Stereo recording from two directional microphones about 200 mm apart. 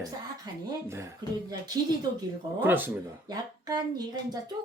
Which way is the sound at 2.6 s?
10° right (ahead or behind).